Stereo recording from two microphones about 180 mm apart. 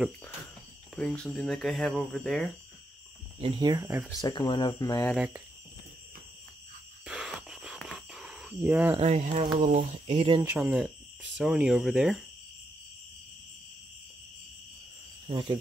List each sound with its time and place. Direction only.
0.9 s speech: 5° left (ahead or behind)
3.3 s speech: 30° right (ahead or behind)
4.2 s speech: 25° left (ahead or behind)
5.1 s speech: 5° right (ahead or behind)
7.1 s cricket: 5° right (ahead or behind)
8.9 s speech: 35° right (ahead or behind)
10.4 s speech: 10° right (ahead or behind)
15.2 s speech: 30° right (ahead or behind)